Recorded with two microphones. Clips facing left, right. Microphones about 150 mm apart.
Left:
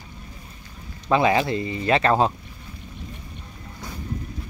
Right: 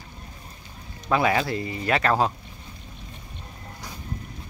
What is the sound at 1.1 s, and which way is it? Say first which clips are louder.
Speech: left 3 dB; 15° left (ahead or behind).